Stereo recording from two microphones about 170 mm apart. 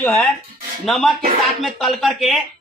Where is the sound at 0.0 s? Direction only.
10° left (ahead or behind).